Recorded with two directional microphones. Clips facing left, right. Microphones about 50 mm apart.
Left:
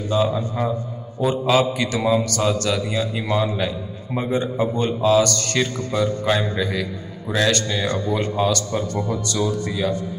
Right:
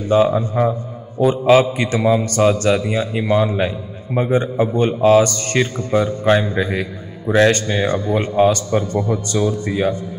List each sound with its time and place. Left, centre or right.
0.1 s a man's voice: right
2.2 s a man's voice: right
5.0 s speech: right
5.3 s a man's voice: right